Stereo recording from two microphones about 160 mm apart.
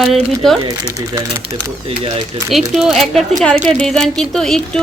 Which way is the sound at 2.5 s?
Centre (ahead or behind).